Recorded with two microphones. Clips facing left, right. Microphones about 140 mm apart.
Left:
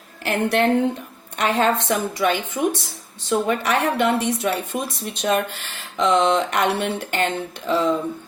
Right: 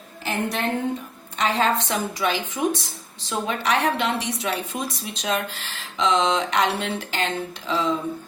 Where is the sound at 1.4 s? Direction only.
60° left (ahead or behind).